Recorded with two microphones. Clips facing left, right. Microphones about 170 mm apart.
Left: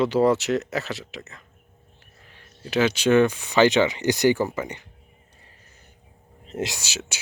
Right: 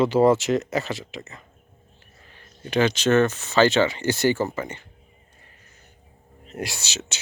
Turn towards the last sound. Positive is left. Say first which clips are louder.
# left 1 dB
turn(degrees=10)  # may be behind; listen again after turning